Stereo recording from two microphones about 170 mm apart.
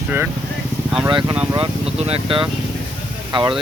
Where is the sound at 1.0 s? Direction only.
30° right (ahead or behind).